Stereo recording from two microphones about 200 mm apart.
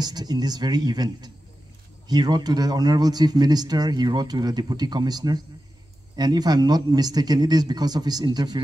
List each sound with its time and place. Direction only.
0.0 s speech: 20° right (ahead or behind)